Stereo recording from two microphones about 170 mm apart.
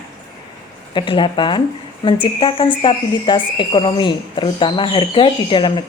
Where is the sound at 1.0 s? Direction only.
30° left (ahead or behind).